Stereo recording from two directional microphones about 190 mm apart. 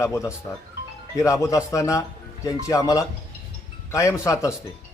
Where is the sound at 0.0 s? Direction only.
15° left (ahead or behind).